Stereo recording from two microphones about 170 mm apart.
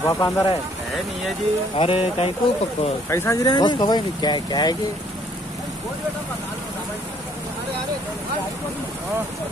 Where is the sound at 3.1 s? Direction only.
15° left (ahead or behind).